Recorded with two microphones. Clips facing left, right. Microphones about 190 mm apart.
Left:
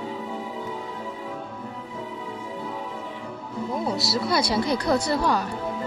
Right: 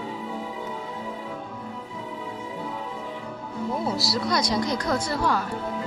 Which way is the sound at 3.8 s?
5° right (ahead or behind).